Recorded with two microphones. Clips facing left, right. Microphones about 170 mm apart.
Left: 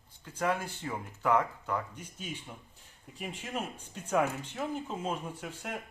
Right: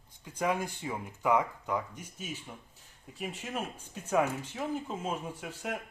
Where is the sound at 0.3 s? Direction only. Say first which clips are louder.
Right 1 dB; 15° right (ahead or behind).